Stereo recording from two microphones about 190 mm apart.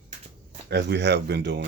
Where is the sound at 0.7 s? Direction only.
65° right (ahead or behind).